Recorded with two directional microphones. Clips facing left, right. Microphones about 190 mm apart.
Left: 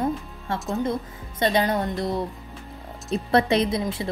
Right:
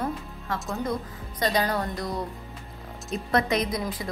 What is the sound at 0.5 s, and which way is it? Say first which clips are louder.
Speech: left 5 dB; centre (ahead or behind).